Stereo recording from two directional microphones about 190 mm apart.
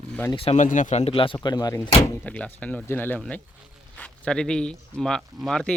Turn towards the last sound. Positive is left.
turn(degrees=0)  # may be behind; listen again after turning